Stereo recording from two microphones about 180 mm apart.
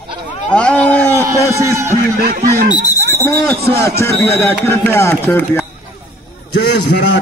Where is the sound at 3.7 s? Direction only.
15° left (ahead or behind).